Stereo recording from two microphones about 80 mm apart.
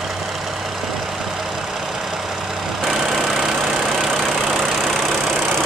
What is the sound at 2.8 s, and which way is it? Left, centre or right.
Vehicle, centre.